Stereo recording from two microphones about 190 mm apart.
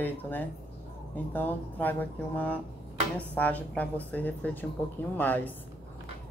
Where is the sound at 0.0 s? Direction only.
10° left (ahead or behind).